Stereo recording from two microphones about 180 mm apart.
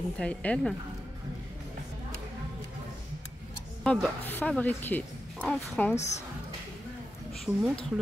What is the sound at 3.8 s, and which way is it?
A woman's voice, 10° left (ahead or behind).